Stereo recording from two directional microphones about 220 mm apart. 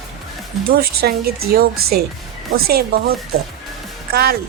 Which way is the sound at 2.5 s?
45° right (ahead or behind).